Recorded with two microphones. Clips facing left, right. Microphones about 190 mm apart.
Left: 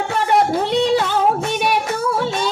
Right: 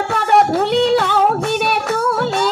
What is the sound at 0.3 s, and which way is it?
Child singing, 60° right (ahead or behind).